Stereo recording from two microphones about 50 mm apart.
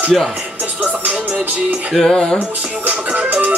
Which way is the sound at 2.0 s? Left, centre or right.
Centre.